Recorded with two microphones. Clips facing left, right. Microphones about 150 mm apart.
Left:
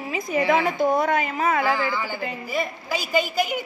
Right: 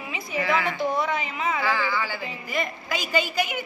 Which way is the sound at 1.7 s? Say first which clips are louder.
Left 2 dB; 15° left (ahead or behind).